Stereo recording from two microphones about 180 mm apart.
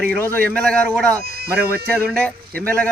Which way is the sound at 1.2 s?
60° right (ahead or behind).